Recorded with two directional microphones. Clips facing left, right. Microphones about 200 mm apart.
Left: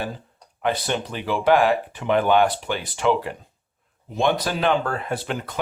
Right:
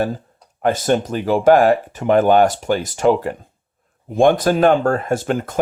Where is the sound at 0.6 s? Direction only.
45° right (ahead or behind).